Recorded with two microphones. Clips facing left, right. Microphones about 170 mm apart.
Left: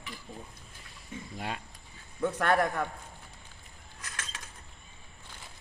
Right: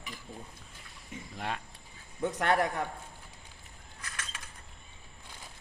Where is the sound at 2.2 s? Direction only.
15° right (ahead or behind).